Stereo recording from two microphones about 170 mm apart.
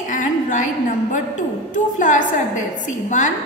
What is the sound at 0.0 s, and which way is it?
A woman's voice, 45° left (ahead or behind).